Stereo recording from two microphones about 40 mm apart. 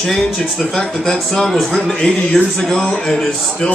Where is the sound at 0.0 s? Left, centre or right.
Centre.